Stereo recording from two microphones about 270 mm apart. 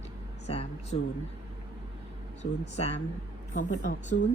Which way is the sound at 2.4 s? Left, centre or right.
Left.